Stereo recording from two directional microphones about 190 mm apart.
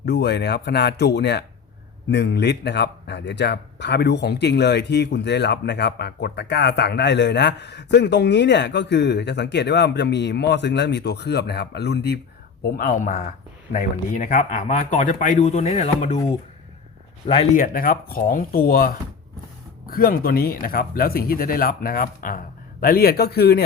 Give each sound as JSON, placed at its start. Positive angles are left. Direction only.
{"t": 0.0, "sound": "speech", "side_deg": 60}
{"t": 17.2, "sound": "speech", "side_deg": 25}
{"t": 17.5, "sound": "speech", "side_deg": 45}